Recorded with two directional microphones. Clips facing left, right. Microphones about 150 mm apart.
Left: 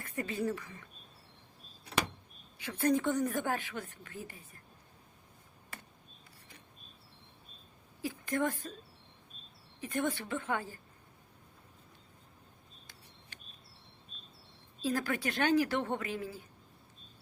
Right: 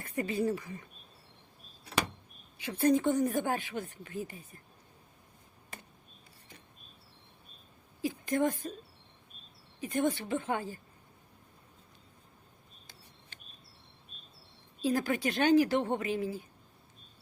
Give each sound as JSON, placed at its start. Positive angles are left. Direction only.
{"t": 0.0, "sound": "whispering", "side_deg": -25}
{"t": 0.4, "sound": "speech", "side_deg": -30}
{"t": 2.6, "sound": "speech", "side_deg": -20}
{"t": 5.7, "sound": "a sound", "side_deg": -20}
{"t": 8.0, "sound": "a sound", "side_deg": -20}
{"t": 9.8, "sound": "speech", "side_deg": -20}
{"t": 14.8, "sound": "speech", "side_deg": -20}